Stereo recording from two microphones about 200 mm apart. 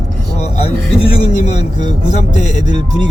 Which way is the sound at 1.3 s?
35° left (ahead or behind).